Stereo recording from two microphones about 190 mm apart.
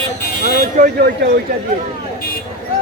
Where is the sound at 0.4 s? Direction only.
55° right (ahead or behind).